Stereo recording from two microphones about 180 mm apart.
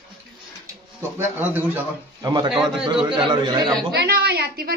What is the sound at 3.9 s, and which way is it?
Speech, 60° right (ahead or behind).